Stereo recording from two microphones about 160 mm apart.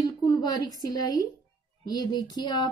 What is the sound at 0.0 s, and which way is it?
A woman's voice, 25° left (ahead or behind).